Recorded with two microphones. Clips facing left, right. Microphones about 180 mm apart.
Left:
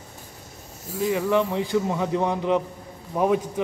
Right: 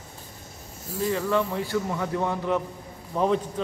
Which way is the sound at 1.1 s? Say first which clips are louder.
Left 3 dB; 15° left (ahead or behind).